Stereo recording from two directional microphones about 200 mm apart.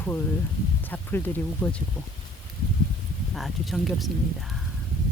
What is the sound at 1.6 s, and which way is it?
Speech, centre (ahead or behind).